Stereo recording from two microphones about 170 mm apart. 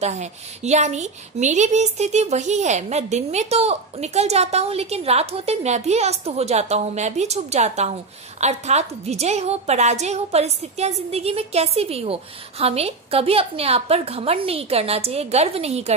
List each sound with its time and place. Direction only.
0.0 s a woman's voice: 40° right (ahead or behind)